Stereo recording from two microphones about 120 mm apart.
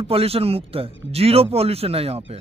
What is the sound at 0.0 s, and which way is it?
Speech, 55° right (ahead or behind).